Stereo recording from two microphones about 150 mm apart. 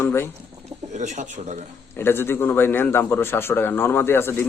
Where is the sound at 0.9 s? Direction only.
50° right (ahead or behind).